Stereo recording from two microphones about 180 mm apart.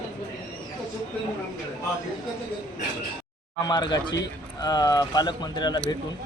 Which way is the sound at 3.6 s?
25° left (ahead or behind).